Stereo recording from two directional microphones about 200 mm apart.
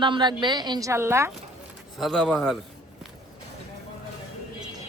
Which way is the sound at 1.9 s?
Centre (ahead or behind).